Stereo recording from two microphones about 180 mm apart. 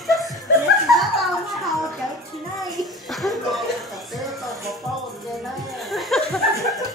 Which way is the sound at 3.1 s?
Centre (ahead or behind).